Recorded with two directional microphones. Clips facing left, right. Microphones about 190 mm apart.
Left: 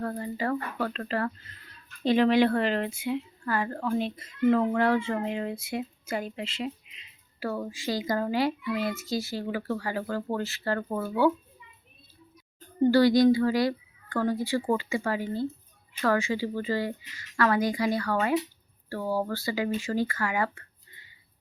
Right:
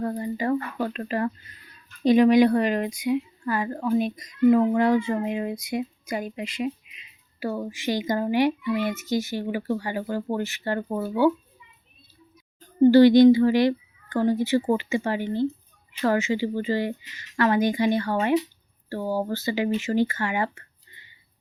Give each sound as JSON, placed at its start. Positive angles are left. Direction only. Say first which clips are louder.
{"t": 0.0, "sound": "a woman's voice", "louder": "right 4 dB", "side_deg": -20}
{"t": 12.8, "sound": "a woman's voice", "louder": "right 6 dB", "side_deg": -20}